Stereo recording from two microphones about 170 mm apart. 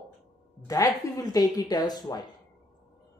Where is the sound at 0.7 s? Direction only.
20° left (ahead or behind).